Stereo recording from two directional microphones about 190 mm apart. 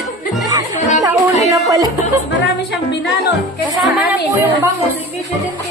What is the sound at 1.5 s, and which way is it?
Speech, 20° right (ahead or behind).